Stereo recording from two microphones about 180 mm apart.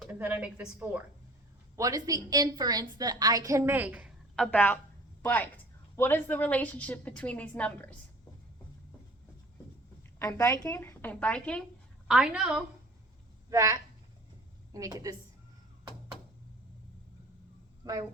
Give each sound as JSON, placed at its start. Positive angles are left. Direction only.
{"t": 0.0, "sound": "a woman's voice", "side_deg": -10}
{"t": 1.7, "sound": "a woman's voice", "side_deg": -20}
{"t": 4.4, "sound": "a woman's voice", "side_deg": 10}
{"t": 10.2, "sound": "a woman's voice", "side_deg": 15}
{"t": 13.5, "sound": "a woman's voice", "side_deg": -15}
{"t": 17.8, "sound": "a woman's voice", "side_deg": -20}